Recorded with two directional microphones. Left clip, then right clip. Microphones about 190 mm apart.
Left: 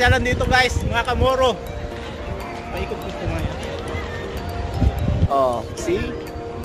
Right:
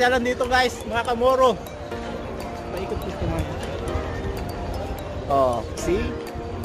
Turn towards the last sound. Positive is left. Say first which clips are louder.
# left 1 dB
turn(degrees=25)  # may be behind; listen again after turning